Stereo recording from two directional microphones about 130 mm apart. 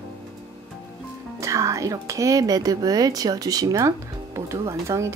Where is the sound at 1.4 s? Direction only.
25° right (ahead or behind).